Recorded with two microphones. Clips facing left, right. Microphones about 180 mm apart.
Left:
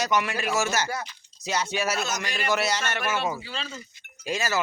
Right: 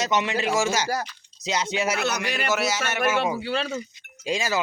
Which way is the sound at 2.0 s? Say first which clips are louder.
Right 4 dB; 65° right (ahead or behind).